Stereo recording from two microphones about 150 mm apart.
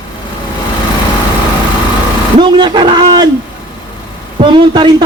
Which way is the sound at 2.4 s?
30° right (ahead or behind).